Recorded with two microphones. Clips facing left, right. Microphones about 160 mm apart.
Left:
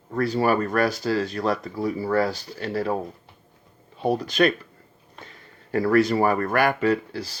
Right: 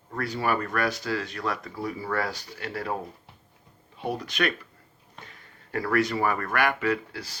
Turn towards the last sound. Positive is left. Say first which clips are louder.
# left 5 dB
turn(degrees=30)  # may be behind; listen again after turning